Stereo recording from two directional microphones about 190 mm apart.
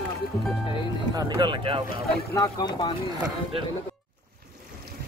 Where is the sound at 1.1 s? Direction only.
25° right (ahead or behind).